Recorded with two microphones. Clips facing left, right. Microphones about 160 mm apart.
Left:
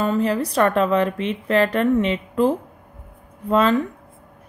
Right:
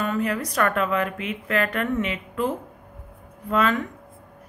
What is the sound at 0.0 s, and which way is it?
Speech, 30° left (ahead or behind).